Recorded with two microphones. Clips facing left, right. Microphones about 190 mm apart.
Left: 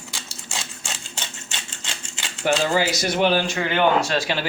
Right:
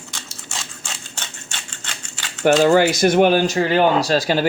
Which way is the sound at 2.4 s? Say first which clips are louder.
Right 7 dB; 50° right (ahead or behind).